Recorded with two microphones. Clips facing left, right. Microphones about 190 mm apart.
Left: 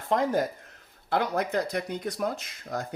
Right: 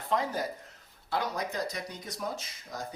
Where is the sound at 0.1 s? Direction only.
50° left (ahead or behind).